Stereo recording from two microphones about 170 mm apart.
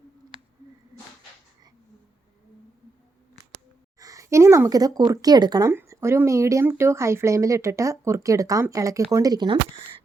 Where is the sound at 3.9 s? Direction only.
20° right (ahead or behind).